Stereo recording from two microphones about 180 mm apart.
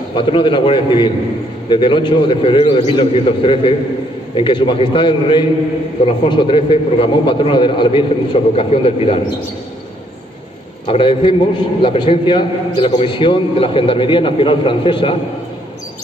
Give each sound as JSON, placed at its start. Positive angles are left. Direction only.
{"t": 0.1, "sound": "a man's voice", "side_deg": 25}
{"t": 10.9, "sound": "a man's voice", "side_deg": 30}